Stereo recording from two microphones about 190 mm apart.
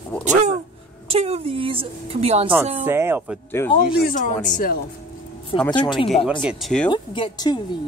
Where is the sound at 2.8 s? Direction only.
10° right (ahead or behind).